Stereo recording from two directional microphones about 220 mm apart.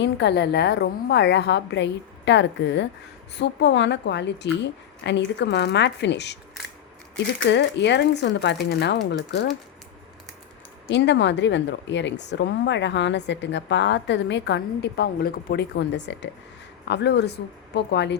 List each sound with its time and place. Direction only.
0.0 s a woman's voice: 50° left (ahead or behind)
7.4 s a woman's voice: 55° left (ahead or behind)
10.8 s a woman's voice: 55° left (ahead or behind)